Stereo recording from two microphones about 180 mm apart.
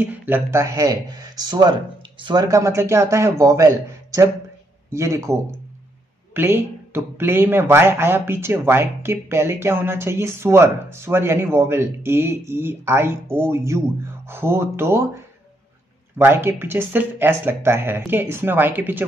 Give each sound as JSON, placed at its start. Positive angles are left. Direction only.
{"t": 0.0, "sound": "speech", "side_deg": -10}
{"t": 16.2, "sound": "speech", "side_deg": -10}